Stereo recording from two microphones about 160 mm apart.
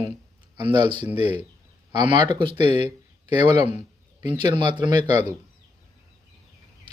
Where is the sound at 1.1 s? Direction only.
40° left (ahead or behind).